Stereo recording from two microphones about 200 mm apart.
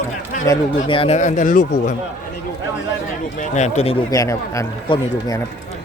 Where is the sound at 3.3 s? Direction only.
35° left (ahead or behind).